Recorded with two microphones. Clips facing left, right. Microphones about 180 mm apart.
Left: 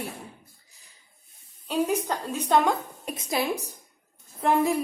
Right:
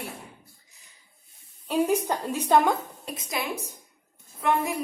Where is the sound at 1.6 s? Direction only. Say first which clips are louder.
Right 2 dB; 10° right (ahead or behind).